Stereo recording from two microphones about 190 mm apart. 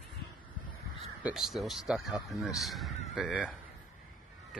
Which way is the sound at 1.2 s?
5° right (ahead or behind).